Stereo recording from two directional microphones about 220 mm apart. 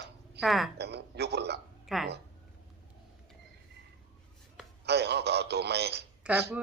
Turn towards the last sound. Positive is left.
turn(degrees=-5)  # may be behind; listen again after turning